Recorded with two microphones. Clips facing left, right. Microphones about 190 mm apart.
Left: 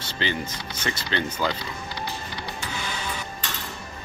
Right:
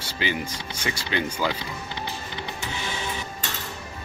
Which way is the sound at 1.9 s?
20° right (ahead or behind).